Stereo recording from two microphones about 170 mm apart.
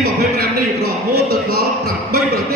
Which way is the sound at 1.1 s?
65° right (ahead or behind).